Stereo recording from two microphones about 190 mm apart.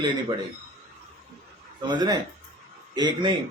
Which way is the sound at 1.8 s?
20° right (ahead or behind).